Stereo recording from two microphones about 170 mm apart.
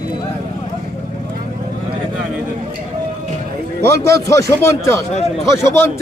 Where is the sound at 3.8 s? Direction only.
20° left (ahead or behind).